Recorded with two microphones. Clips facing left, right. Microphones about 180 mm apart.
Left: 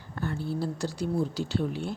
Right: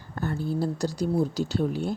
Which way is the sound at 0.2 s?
45° right (ahead or behind).